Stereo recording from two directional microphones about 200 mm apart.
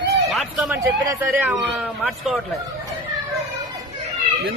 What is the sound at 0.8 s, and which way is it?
Speech, 10° right (ahead or behind).